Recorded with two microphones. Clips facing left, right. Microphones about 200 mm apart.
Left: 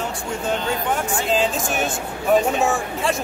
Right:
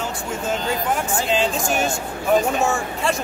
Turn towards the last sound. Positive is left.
turn(degrees=0)  # may be behind; listen again after turning